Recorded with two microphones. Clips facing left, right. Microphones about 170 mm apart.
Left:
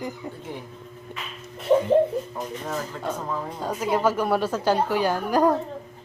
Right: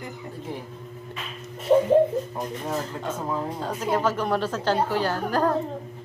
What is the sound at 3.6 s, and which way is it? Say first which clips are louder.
A woman's voice: left 3 dB; 10° left (ahead or behind).